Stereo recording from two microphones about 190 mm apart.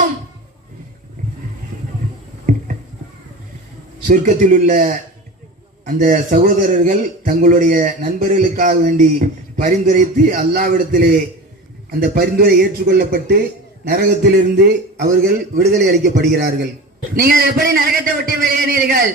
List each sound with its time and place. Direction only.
4.1 s a man's voice: 45° right (ahead or behind)